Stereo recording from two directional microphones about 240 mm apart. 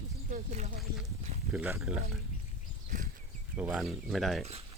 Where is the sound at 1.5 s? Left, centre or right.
Centre.